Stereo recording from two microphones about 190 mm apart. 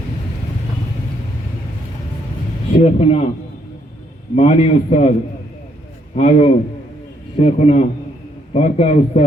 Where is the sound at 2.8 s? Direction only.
35° left (ahead or behind).